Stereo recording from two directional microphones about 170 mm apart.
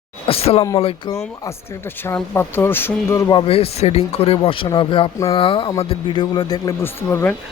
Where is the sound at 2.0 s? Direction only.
15° left (ahead or behind).